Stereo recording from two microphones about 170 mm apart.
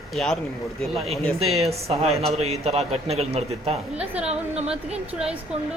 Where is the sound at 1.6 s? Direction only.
35° right (ahead or behind).